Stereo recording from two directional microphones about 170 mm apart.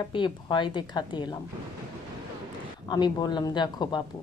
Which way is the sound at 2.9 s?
25° left (ahead or behind).